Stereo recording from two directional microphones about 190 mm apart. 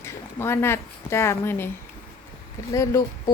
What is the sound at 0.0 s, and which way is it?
Speech, 10° left (ahead or behind).